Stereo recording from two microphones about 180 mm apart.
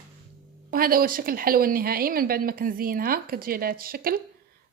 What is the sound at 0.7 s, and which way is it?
Speech, 55° right (ahead or behind).